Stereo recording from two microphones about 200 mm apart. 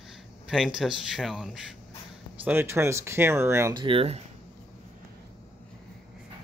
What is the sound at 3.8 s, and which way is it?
Speech, 30° right (ahead or behind).